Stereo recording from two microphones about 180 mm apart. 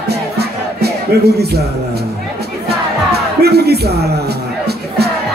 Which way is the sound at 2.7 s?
60° right (ahead or behind).